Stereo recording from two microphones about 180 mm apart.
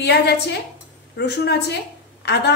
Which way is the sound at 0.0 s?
65° left (ahead or behind).